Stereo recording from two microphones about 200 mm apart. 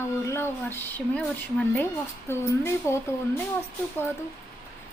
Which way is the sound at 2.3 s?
15° left (ahead or behind).